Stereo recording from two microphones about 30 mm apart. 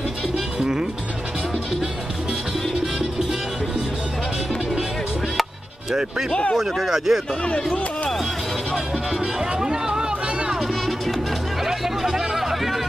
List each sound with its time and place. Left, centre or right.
0.6 s music: right
6.5 s speech: centre
8.7 s music: centre
11.6 s hubbub: centre